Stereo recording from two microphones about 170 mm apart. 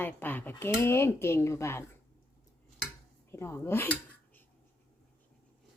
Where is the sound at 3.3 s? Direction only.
15° left (ahead or behind).